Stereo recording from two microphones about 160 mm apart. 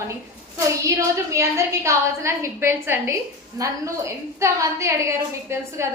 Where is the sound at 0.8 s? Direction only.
20° right (ahead or behind).